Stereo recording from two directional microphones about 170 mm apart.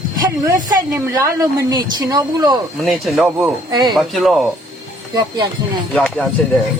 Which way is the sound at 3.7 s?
25° right (ahead or behind).